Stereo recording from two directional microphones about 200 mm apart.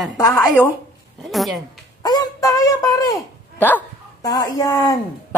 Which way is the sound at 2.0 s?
20° left (ahead or behind).